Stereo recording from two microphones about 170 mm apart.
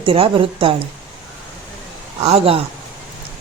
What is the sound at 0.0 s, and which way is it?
Speech, 30° right (ahead or behind).